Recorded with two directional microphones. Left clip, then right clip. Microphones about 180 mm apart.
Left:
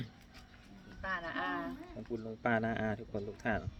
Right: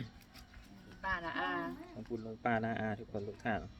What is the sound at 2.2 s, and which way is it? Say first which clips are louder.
Speech: left 2 dB; 15° left (ahead or behind).